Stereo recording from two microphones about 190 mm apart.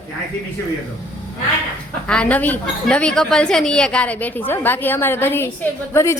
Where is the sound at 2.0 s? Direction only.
5° left (ahead or behind).